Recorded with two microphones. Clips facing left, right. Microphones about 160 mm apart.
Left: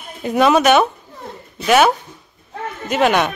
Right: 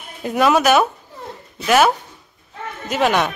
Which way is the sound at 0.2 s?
Centre (ahead or behind).